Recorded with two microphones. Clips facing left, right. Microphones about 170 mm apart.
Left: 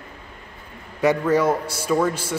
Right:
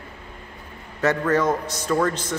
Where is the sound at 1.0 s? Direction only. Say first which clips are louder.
Left 2 dB; 10° left (ahead or behind).